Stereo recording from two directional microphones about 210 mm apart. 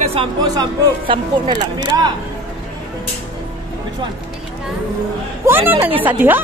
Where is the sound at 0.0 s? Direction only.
25° right (ahead or behind).